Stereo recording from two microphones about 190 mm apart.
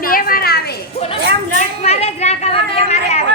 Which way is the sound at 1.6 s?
35° left (ahead or behind).